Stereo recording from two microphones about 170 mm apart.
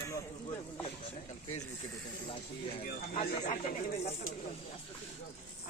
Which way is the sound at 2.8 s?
65° left (ahead or behind).